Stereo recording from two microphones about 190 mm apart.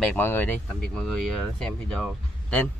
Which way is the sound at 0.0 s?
10° left (ahead or behind).